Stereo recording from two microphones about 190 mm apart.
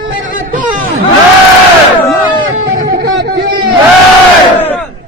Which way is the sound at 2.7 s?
55° right (ahead or behind).